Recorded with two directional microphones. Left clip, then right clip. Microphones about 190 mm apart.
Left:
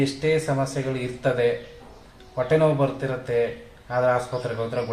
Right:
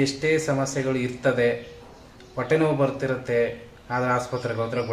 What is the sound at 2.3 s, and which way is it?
A man's voice, 15° right (ahead or behind).